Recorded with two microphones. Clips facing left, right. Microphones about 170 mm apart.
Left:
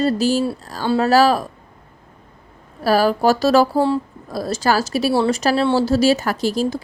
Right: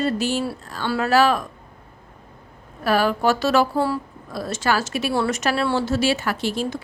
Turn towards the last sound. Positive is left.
turn(degrees=40)  # may be behind; listen again after turning